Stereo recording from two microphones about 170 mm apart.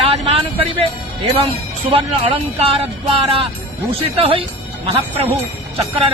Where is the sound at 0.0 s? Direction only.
35° right (ahead or behind).